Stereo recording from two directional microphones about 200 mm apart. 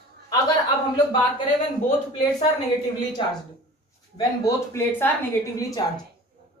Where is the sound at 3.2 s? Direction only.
25° left (ahead or behind).